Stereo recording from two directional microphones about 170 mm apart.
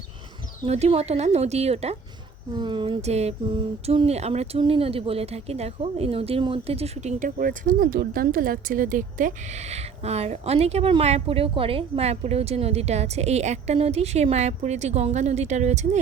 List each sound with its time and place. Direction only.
0.6 s speech: 35° right (ahead or behind)
2.6 s speech: 30° right (ahead or behind)